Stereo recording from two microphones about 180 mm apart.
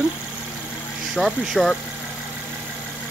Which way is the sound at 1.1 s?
5° right (ahead or behind).